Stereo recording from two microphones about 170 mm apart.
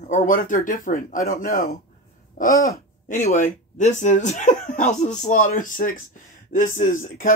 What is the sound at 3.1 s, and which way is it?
Speech, 45° left (ahead or behind).